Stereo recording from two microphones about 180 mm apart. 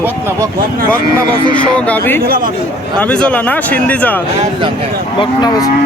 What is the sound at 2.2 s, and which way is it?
Speech, 55° right (ahead or behind).